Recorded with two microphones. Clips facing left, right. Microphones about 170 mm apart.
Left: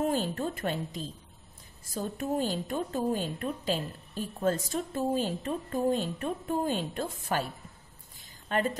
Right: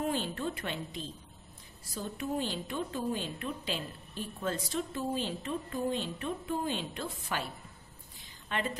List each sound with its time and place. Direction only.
0.0 s a woman's voice: 45° left (ahead or behind)
8.5 s a woman's voice: 40° left (ahead or behind)